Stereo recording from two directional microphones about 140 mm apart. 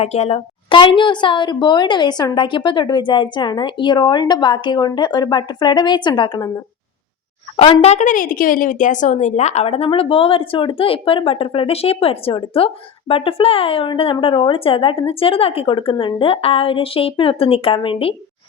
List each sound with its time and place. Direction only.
0.0 s a woman's voice: 50° left (ahead or behind)
7.5 s a woman's voice: 40° left (ahead or behind)